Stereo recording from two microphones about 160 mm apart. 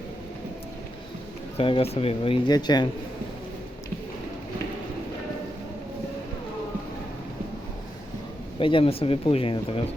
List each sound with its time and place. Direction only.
1.5 s speech: 35° left (ahead or behind)
8.5 s speech: 35° left (ahead or behind)